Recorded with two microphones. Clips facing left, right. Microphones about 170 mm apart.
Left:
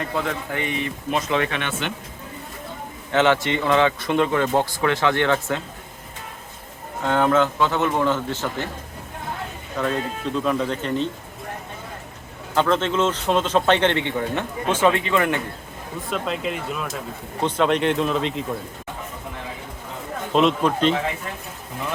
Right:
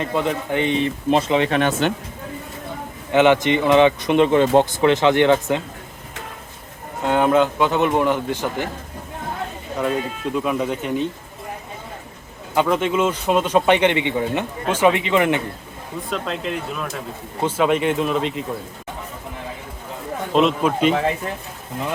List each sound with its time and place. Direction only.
0.0 s a man's voice: 20° right (ahead or behind)
1.5 s speech: 40° right (ahead or behind)
3.1 s a man's voice: 15° right (ahead or behind)
7.0 s a man's voice: 15° right (ahead or behind)
9.7 s a man's voice: 10° right (ahead or behind)
12.5 s a man's voice: 10° right (ahead or behind)
16.0 s speech: centre (ahead or behind)
20.3 s speech: centre (ahead or behind)